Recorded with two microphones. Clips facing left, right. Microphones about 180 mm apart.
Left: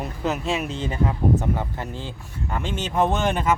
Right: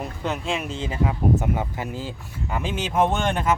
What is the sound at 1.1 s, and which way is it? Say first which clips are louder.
Speech: right 1 dB; 10° right (ahead or behind).